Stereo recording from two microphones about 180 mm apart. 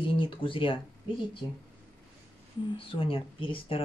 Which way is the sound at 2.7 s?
30° left (ahead or behind).